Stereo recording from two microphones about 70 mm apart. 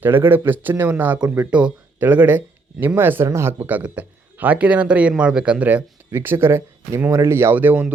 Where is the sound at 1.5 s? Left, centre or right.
Centre.